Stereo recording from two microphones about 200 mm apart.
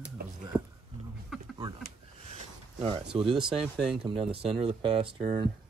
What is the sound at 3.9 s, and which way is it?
Speech, 25° right (ahead or behind).